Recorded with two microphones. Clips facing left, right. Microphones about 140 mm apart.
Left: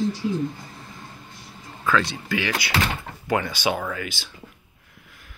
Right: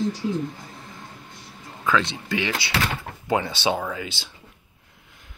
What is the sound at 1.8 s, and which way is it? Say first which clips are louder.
Speech: even; 20° right (ahead or behind).